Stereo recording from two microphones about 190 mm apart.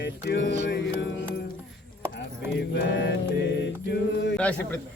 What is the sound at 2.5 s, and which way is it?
Music, 65° left (ahead or behind).